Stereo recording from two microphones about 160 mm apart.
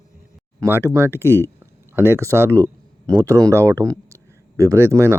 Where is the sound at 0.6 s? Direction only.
15° right (ahead or behind).